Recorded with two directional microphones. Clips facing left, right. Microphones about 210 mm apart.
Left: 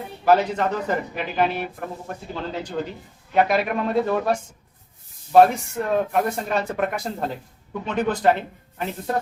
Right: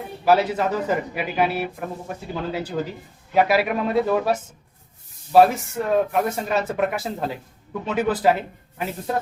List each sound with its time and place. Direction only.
0.3 s speech: 5° right (ahead or behind)